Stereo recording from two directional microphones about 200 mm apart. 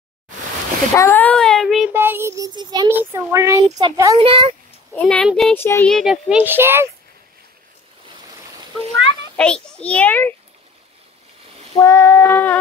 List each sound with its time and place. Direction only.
0.9 s a sound: 10° left (ahead or behind)
1.9 s a child's voice: 10° right (ahead or behind); by 4.6 s 25° right (ahead or behind)
4.9 s a child's voice: 5° left (ahead or behind); by 6.9 s 10° right (ahead or behind)
9.4 s a child's voice: 5° left (ahead or behind)
11.8 s a child's voice: 15° left (ahead or behind)